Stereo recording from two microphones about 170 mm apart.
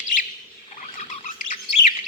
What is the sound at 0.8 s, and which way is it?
Rodents, 45° left (ahead or behind).